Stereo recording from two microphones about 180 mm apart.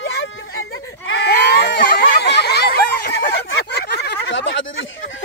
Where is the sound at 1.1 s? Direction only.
70° left (ahead or behind); by 2.1 s 50° left (ahead or behind).